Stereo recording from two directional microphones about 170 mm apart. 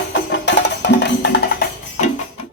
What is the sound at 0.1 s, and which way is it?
Music, 90° left.